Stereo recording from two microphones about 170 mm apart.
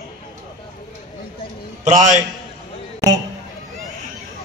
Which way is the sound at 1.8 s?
45° right (ahead or behind).